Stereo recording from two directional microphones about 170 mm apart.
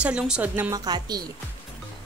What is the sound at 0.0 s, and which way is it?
Speech, 5° right (ahead or behind).